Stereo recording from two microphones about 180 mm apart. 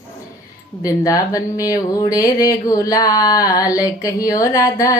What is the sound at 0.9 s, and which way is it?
Speech, 20° left (ahead or behind).